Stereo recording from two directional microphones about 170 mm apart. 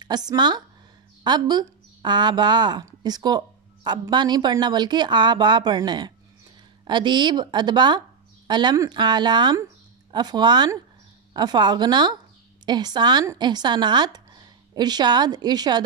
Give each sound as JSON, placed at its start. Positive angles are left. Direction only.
{"t": 0.0, "sound": "speech", "side_deg": -25}